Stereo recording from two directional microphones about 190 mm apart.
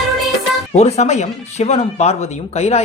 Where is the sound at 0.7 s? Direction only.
35° left (ahead or behind).